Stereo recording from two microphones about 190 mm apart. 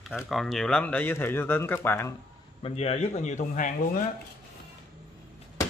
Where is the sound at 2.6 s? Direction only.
30° left (ahead or behind).